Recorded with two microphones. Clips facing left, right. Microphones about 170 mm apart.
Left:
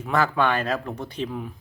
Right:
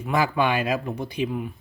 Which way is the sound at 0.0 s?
10° right (ahead or behind).